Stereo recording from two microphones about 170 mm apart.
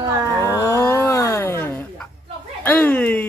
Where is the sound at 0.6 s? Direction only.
15° left (ahead or behind).